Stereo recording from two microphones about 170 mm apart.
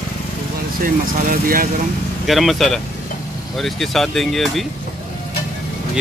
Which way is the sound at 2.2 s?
Centre (ahead or behind).